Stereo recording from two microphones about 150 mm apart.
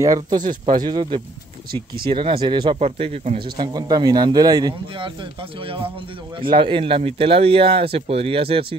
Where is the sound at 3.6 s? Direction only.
25° right (ahead or behind).